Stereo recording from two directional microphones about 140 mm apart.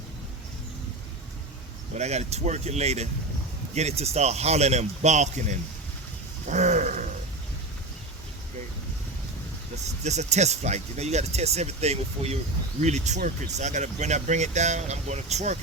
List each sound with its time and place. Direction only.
2.0 s speech: 50° right (ahead or behind)
6.5 s wild animals: 60° right (ahead or behind)
10.0 s speech: 55° right (ahead or behind)